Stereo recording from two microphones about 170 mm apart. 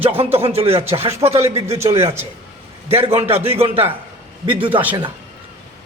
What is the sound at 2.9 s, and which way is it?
Speech, 35° right (ahead or behind).